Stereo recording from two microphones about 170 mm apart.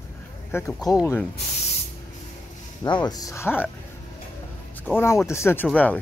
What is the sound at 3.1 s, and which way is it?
Speech, 20° left (ahead or behind).